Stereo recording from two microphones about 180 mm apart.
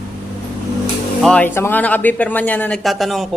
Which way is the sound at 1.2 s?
10° left (ahead or behind).